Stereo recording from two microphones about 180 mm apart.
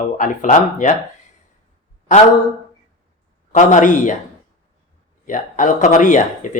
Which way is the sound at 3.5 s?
45° left (ahead or behind).